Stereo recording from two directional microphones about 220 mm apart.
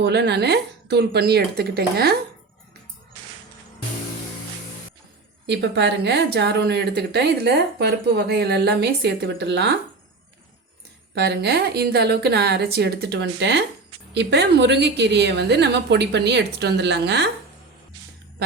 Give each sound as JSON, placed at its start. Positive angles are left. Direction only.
{"t": 0.0, "sound": "a woman's voice", "side_deg": -50}
{"t": 5.5, "sound": "a woman's voice", "side_deg": -50}
{"t": 11.1, "sound": "a woman's voice", "side_deg": -50}